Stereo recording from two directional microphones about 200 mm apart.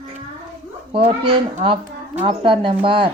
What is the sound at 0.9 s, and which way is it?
A man's voice, 25° right (ahead or behind).